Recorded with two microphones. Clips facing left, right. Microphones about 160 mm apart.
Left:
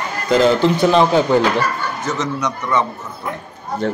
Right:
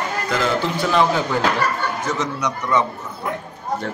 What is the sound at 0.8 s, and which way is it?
Speech, 20° left (ahead or behind).